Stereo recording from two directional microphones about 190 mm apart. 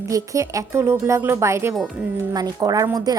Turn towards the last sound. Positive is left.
turn(degrees=-20)  # may be behind; listen again after turning